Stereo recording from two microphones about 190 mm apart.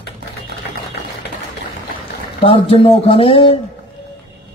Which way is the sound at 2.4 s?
30° left (ahead or behind).